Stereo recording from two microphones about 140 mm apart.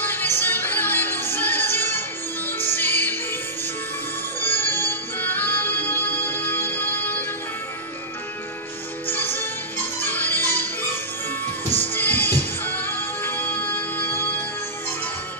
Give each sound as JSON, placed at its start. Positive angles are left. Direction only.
{"t": 0.0, "sound": "music", "side_deg": 15}
{"t": 4.4, "sound": "music", "side_deg": 15}
{"t": 9.1, "sound": "music", "side_deg": 15}
{"t": 11.9, "sound": "music", "side_deg": 15}